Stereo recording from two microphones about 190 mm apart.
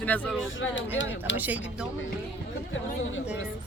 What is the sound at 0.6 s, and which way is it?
Speech, 75° left (ahead or behind).